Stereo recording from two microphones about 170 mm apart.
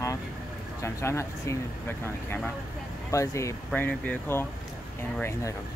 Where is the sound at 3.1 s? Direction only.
20° left (ahead or behind).